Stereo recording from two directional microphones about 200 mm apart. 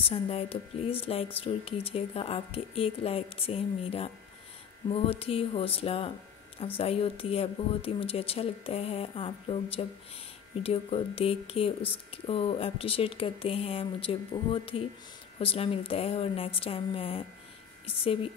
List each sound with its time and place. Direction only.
0.0 s speech: 30° left (ahead or behind)